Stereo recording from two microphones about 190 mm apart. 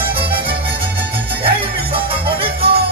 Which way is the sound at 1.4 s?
30° right (ahead or behind).